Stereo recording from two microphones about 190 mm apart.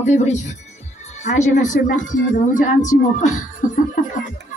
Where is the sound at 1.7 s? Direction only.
40° left (ahead or behind).